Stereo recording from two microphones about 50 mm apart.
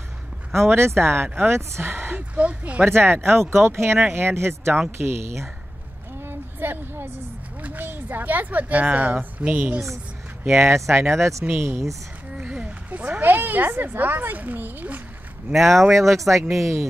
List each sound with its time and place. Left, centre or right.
0.6 s speech: right
2.3 s speech: right
2.8 s speech: right
6.2 s a sound: right
7.8 s speech: right
10.4 s speech: right
12.4 s speech: right
15.5 s speech: centre
16.1 s speech: right